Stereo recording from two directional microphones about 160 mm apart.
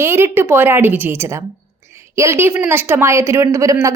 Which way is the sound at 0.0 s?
15° right (ahead or behind).